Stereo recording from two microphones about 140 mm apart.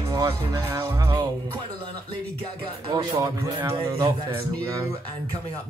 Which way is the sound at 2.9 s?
25° right (ahead or behind).